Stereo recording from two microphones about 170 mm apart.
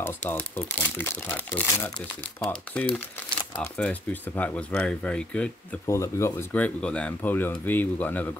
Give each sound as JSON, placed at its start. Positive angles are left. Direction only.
{"t": 0.0, "sound": "speech", "side_deg": 10}